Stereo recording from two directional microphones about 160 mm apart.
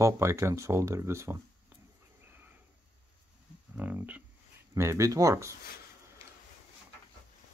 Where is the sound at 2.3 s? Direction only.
10° right (ahead or behind).